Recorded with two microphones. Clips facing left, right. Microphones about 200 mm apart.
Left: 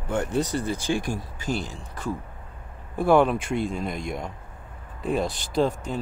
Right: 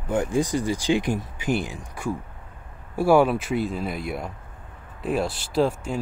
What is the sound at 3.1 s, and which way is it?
Speech, 5° right (ahead or behind).